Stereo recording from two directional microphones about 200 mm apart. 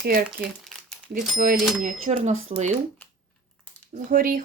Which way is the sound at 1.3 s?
45° right (ahead or behind).